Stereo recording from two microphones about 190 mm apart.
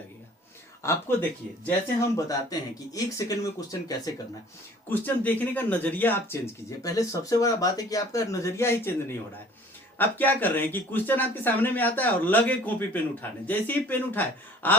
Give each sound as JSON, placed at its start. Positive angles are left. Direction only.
{"t": 0.8, "sound": "speech", "side_deg": 15}
{"t": 10.0, "sound": "speech", "side_deg": 10}